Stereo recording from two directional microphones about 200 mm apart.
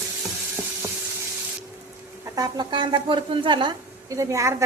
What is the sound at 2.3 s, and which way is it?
A woman's voice, 20° right (ahead or behind).